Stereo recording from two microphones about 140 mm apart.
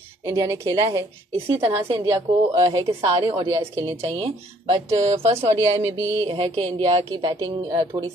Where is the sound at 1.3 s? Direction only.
45° right (ahead or behind).